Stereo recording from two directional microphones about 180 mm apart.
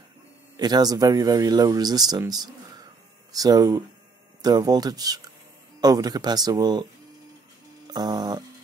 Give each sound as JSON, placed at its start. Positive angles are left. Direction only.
{"t": 0.6, "sound": "speech", "side_deg": -20}
{"t": 7.9, "sound": "speech", "side_deg": -20}